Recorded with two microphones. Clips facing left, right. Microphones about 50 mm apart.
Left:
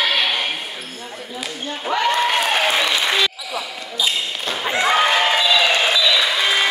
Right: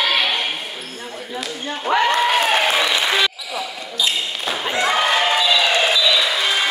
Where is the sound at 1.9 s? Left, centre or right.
Centre.